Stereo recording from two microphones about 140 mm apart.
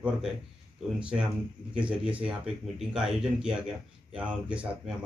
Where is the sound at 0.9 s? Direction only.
10° right (ahead or behind).